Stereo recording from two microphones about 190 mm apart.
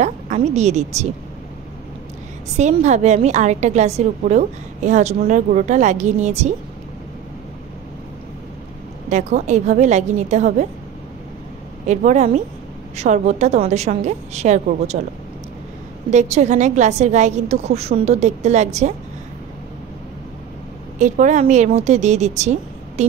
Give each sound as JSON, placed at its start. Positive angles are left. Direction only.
{"t": 0.0, "sound": "a woman's voice", "side_deg": -35}
{"t": 2.5, "sound": "a woman's voice", "side_deg": -35}
{"t": 9.1, "sound": "a woman's voice", "side_deg": -40}
{"t": 11.9, "sound": "a woman's voice", "side_deg": -40}
{"t": 16.1, "sound": "a woman's voice", "side_deg": -35}
{"t": 21.0, "sound": "a woman's voice", "side_deg": -40}